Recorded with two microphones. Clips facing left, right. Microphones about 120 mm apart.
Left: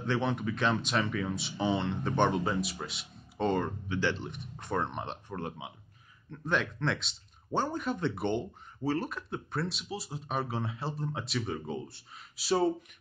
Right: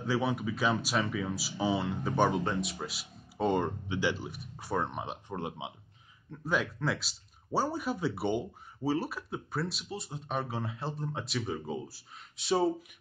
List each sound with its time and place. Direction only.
0.0 s speech: 5° right (ahead or behind)
3.5 s speech: 20° right (ahead or behind)
5.3 s speech: 20° right (ahead or behind)
6.3 s speech: 5° right (ahead or behind)